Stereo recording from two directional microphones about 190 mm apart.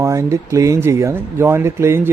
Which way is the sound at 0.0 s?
15° right (ahead or behind).